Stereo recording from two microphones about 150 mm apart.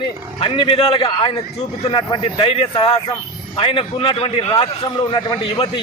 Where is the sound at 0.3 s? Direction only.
35° left (ahead or behind).